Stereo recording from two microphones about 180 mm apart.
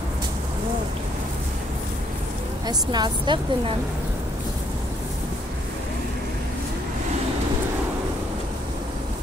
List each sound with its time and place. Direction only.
2.6 s a woman's voice: 25° right (ahead or behind)